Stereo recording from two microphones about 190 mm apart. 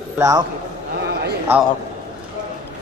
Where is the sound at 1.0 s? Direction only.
60° right (ahead or behind).